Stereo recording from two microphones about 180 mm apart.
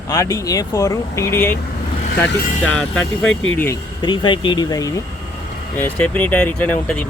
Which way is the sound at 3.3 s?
90° left.